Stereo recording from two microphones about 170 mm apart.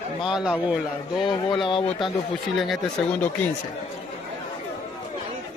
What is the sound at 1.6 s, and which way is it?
Speech, 30° left (ahead or behind).